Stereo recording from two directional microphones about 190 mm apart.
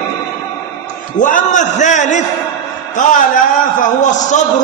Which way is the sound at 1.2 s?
40° left (ahead or behind).